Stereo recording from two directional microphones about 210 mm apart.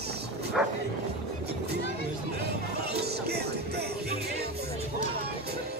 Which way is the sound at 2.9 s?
50° right (ahead or behind).